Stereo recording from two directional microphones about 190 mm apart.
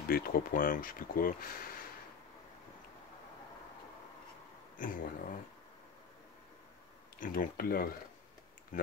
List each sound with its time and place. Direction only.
0.1 s speech: 50° left (ahead or behind)
4.7 s speech: 45° left (ahead or behind)
7.2 s speech: 45° left (ahead or behind)